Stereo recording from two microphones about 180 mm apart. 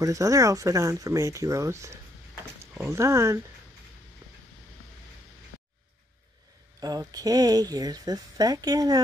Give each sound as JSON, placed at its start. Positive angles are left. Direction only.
{"t": 0.0, "sound": "speech", "side_deg": -20}
{"t": 6.8, "sound": "speech", "side_deg": -20}